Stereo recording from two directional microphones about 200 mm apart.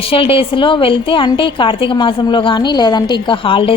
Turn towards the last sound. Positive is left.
turn(degrees=25)  # may be behind; listen again after turning